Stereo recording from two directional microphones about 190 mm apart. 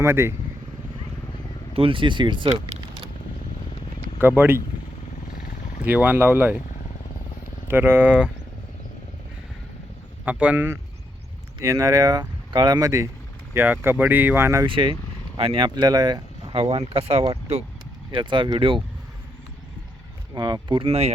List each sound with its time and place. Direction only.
0.0 s speech: 15° right (ahead or behind)
1.7 s speech: 30° right (ahead or behind)
4.2 s speech: 10° right (ahead or behind)
5.4 s vehicle: 45° left (ahead or behind)
5.8 s speech: 10° right (ahead or behind)
7.7 s speech: 10° right (ahead or behind)
10.2 s speech: 5° right (ahead or behind)
16.8 s speech: 35° right (ahead or behind)
20.3 s speech: 20° right (ahead or behind)